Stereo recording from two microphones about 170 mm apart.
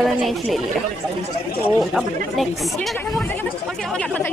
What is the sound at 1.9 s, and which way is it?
Speech, centre (ahead or behind).